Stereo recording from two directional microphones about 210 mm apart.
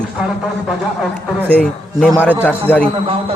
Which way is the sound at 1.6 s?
5° left (ahead or behind).